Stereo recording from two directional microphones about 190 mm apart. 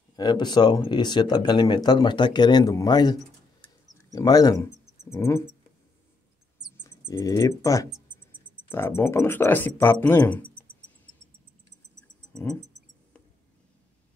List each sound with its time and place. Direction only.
0.1 s speech: 20° left (ahead or behind)
3.6 s a sound: 20° left (ahead or behind)
6.8 s speech: 15° left (ahead or behind)